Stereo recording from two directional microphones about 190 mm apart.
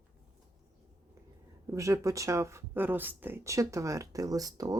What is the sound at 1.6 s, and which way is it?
Speech, 15° right (ahead or behind).